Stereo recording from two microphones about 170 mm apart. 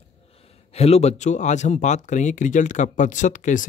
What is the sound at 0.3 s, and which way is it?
Speech, 35° left (ahead or behind).